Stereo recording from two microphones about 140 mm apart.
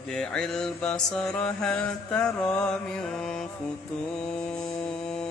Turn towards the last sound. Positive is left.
turn(degrees=5)  # may be behind; listen again after turning